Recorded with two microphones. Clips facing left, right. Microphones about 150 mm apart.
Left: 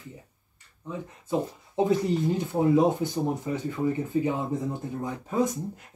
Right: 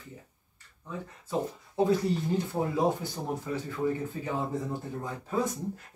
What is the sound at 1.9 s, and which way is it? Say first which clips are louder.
Speech: left 4 dB; 20° left (ahead or behind).